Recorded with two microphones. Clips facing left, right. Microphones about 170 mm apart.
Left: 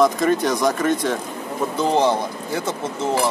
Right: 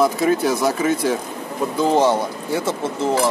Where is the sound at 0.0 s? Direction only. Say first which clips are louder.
Even; 5° right (ahead or behind).